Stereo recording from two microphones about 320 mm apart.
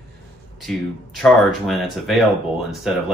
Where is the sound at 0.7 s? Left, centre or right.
Centre.